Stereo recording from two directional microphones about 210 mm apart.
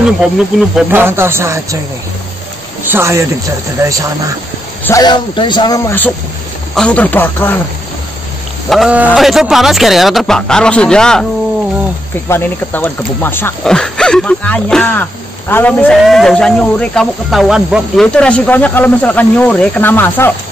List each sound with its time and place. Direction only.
0.0 s speech: centre (ahead or behind)
2.8 s speech: 10° right (ahead or behind)
4.8 s a man's voice: 15° left (ahead or behind)
8.6 s speech: centre (ahead or behind)
12.3 s speech: 10° left (ahead or behind)